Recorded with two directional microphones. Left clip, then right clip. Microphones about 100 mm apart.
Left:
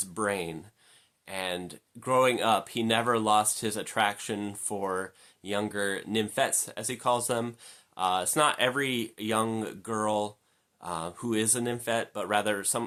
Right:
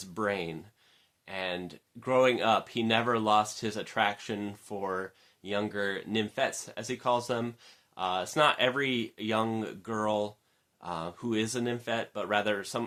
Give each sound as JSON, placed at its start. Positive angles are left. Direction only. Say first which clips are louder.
{"t": 0.0, "sound": "speech", "louder": "left 1 dB", "side_deg": 35}